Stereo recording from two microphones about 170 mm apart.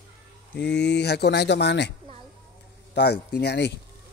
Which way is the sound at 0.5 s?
90° left.